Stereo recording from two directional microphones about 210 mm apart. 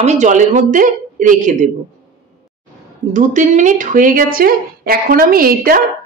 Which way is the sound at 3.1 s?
35° right (ahead or behind).